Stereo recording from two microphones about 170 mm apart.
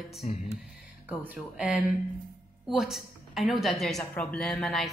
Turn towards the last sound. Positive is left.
turn(degrees=0)  # may be behind; listen again after turning